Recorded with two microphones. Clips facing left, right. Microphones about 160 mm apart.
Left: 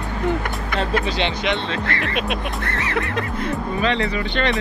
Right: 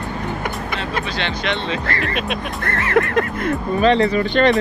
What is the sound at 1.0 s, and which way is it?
Speech, 20° left (ahead or behind).